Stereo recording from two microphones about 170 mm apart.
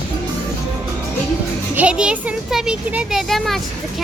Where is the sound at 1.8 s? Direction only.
5° right (ahead or behind).